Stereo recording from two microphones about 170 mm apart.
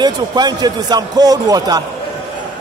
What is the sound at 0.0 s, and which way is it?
Speech, 25° right (ahead or behind).